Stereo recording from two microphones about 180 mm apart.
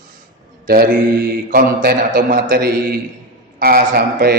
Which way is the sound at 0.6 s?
55° right (ahead or behind).